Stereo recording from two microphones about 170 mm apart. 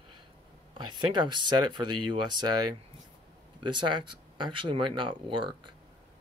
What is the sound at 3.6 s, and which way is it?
Speech, 30° right (ahead or behind).